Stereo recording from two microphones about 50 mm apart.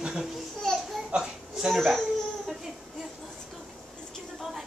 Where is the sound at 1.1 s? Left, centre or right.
Centre.